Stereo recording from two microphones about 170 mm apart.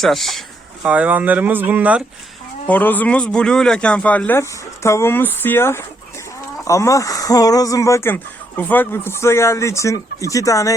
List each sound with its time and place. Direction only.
0.0 s speech: centre (ahead or behind)
2.6 s speech: 10° left (ahead or behind)